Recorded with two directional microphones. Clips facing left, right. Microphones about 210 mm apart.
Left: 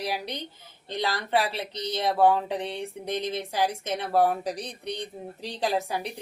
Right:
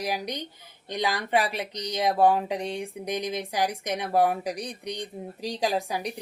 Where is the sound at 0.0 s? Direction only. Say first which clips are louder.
Right 1 dB; 15° right (ahead or behind).